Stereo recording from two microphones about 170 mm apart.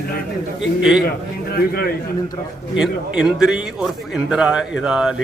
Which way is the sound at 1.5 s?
65° left (ahead or behind).